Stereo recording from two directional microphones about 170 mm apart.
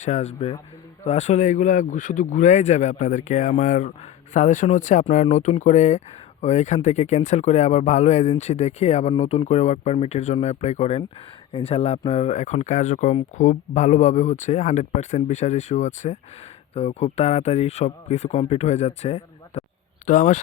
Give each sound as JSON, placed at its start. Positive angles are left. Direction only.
{"t": 0.0, "sound": "speech", "side_deg": 40}